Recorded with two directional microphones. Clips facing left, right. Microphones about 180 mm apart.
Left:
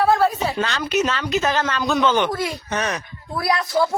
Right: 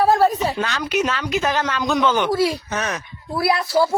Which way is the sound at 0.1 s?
40° right (ahead or behind).